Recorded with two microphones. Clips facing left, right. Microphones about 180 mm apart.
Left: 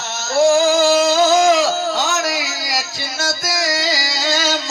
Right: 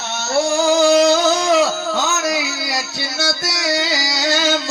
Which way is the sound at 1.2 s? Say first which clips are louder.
Left 4 dB; 90° left.